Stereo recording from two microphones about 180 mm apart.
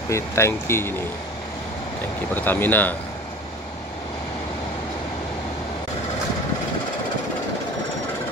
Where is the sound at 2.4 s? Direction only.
10° left (ahead or behind).